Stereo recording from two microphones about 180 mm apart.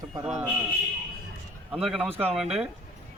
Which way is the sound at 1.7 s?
5° right (ahead or behind).